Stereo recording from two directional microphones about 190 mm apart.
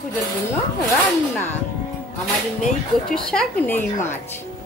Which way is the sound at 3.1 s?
5° left (ahead or behind).